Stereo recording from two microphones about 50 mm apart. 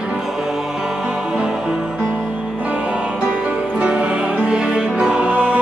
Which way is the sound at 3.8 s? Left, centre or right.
Right.